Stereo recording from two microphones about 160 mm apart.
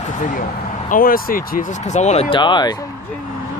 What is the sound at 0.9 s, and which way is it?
Speech, 65° left (ahead or behind).